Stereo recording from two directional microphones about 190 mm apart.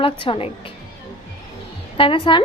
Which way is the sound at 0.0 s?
30° left (ahead or behind).